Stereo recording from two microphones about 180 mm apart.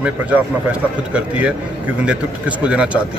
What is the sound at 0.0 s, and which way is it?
A man's voice, 10° right (ahead or behind).